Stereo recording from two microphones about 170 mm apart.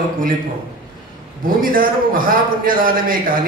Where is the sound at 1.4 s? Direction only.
55° right (ahead or behind).